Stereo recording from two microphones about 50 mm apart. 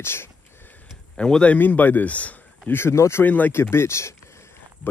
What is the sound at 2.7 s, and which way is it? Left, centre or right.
Speech, left.